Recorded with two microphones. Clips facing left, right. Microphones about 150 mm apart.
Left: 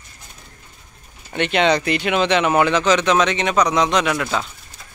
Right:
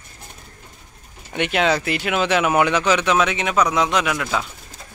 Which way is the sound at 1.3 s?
10° right (ahead or behind).